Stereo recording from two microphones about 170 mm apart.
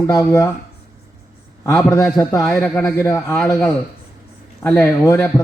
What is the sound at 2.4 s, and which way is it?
A man's voice, 5° left (ahead or behind).